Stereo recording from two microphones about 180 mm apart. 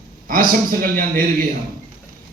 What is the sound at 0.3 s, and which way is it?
A man's voice, 50° right (ahead or behind).